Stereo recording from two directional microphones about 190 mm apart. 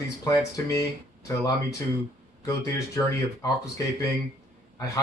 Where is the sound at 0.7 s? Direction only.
15° left (ahead or behind).